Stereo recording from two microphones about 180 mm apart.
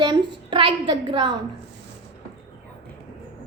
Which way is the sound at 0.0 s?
25° right (ahead or behind).